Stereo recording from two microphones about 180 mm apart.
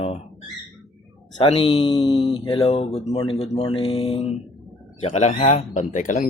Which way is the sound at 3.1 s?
25° left (ahead or behind).